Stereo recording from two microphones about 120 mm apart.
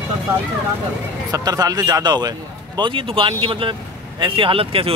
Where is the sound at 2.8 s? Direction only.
45° right (ahead or behind).